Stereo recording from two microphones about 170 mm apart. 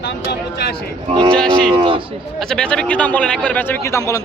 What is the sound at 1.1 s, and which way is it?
Speech, 30° right (ahead or behind).